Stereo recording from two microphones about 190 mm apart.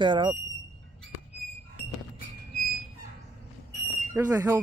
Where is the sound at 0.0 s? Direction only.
25° right (ahead or behind).